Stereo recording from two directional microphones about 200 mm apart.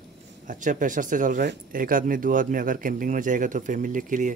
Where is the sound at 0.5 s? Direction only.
40° right (ahead or behind).